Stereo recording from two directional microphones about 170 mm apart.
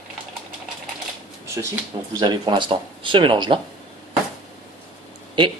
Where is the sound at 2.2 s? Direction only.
25° right (ahead or behind).